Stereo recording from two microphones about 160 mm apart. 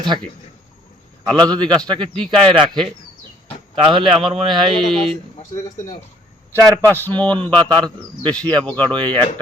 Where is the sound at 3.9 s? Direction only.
30° right (ahead or behind).